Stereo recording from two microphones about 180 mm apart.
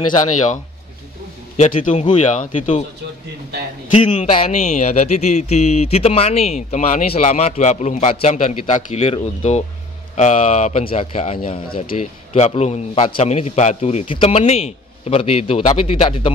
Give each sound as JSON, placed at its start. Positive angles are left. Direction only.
{"t": 1.6, "sound": "speech", "side_deg": 40}
{"t": 3.9, "sound": "speech", "side_deg": 40}